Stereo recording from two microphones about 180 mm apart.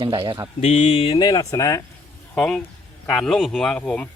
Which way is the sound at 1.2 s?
20° left (ahead or behind).